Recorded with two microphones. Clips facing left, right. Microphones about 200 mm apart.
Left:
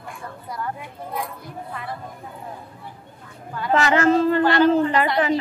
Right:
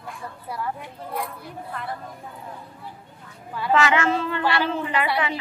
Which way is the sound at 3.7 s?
40° left (ahead or behind).